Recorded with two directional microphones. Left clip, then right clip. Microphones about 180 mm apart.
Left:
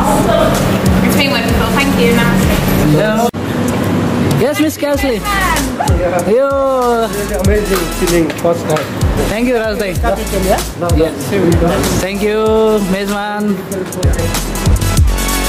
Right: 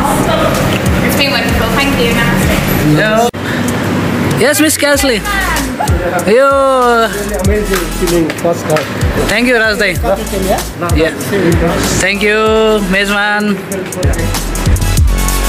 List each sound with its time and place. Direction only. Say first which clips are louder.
3.0 s vehicle: right 5 dB; centre (ahead or behind)
4.4 s speech: right 6 dB; 5° left (ahead or behind)
9.3 s speech: right 6 dB; 5° left (ahead or behind)
12.0 s speech: right 4 dB; 10° left (ahead or behind)